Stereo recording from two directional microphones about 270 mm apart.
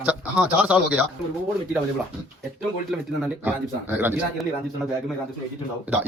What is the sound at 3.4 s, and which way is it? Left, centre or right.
A man's voice, centre.